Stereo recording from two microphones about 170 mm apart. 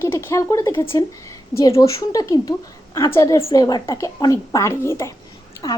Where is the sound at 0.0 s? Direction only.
15° left (ahead or behind).